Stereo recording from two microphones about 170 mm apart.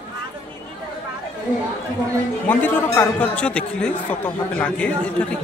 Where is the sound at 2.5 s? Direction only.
10° left (ahead or behind).